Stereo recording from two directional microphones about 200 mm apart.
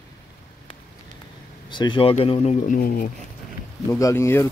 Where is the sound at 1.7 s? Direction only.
25° left (ahead or behind); by 3.1 s 40° left (ahead or behind).